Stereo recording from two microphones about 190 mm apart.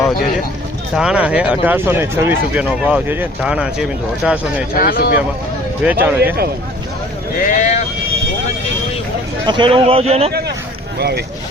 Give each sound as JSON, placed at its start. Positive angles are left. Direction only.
{"t": 0.9, "sound": "speech", "side_deg": -5}
{"t": 4.8, "sound": "speech", "side_deg": 50}
{"t": 5.8, "sound": "speech", "side_deg": -10}
{"t": 7.4, "sound": "speech", "side_deg": 40}
{"t": 9.5, "sound": "a man's voice", "side_deg": -25}
{"t": 10.9, "sound": "speech", "side_deg": -55}